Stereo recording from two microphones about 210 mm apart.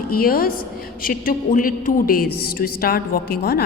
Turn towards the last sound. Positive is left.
turn(degrees=45)  # may be behind; listen again after turning